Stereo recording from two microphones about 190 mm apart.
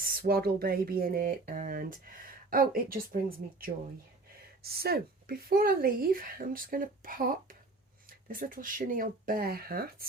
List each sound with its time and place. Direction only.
0.0 s speech: 50° right (ahead or behind)